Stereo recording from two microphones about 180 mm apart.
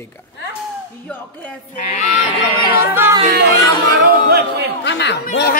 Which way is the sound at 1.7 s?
45° left (ahead or behind).